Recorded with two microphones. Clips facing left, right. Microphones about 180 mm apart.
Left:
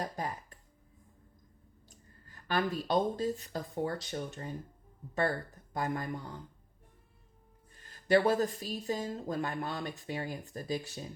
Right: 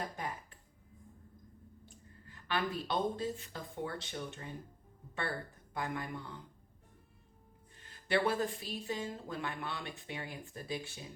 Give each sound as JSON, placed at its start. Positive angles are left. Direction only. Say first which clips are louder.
{"t": 1.8, "sound": "speech", "louder": "right 3 dB", "side_deg": 40}
{"t": 5.7, "sound": "speech", "louder": "left 4 dB", "side_deg": 40}
{"t": 8.0, "sound": "speech", "louder": "left 6 dB", "side_deg": 40}